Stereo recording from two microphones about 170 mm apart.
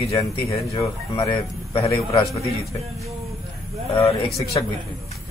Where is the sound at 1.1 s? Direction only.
30° left (ahead or behind).